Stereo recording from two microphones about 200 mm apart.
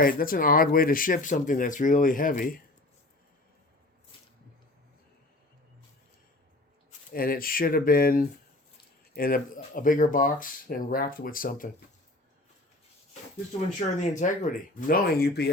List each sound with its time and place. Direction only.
0.0 s speech: 45° left (ahead or behind)
7.1 s speech: 45° left (ahead or behind)
13.7 s speech: 35° left (ahead or behind)